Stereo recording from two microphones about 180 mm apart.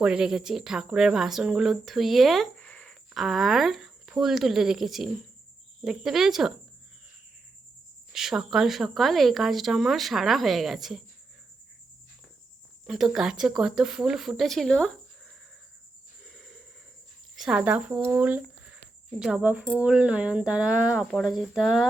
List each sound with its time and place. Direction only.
0.0 s speech: 5° right (ahead or behind)
8.1 s speech: centre (ahead or behind)
12.9 s speech: centre (ahead or behind)
16.2 s snort: centre (ahead or behind)
17.3 s speech: 5° right (ahead or behind)
18.1 s a sound: 10° right (ahead or behind)
19.2 s speech: 5° right (ahead or behind)